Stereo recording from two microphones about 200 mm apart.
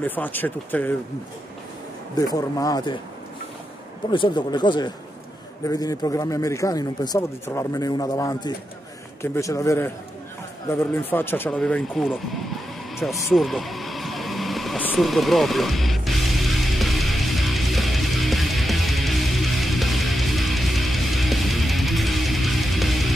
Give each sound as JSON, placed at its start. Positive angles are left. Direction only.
{"t": 0.0, "sound": "speech", "side_deg": 10}
{"t": 2.1, "sound": "speech", "side_deg": 20}
{"t": 4.1, "sound": "speech", "side_deg": 25}
{"t": 10.7, "sound": "a sound", "side_deg": 10}